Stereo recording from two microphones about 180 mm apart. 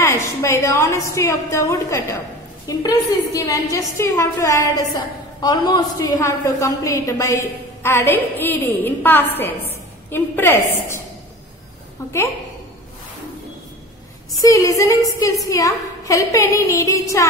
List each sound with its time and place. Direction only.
0.0 s a woman's voice: 15° left (ahead or behind)
12.0 s a woman's voice: 15° left (ahead or behind)
14.4 s a woman's voice: 20° left (ahead or behind)